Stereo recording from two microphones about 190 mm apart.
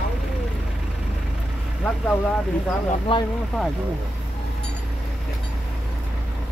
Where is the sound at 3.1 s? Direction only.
30° left (ahead or behind).